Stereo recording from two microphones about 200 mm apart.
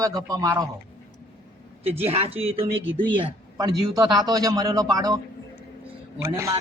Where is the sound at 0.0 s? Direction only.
15° right (ahead or behind).